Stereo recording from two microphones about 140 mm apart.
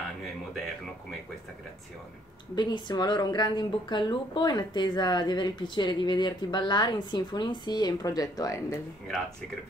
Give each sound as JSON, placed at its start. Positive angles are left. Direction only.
{"t": 2.5, "sound": "a woman's voice", "side_deg": 30}